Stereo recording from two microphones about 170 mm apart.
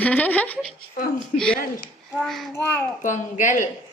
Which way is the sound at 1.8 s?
5° left (ahead or behind).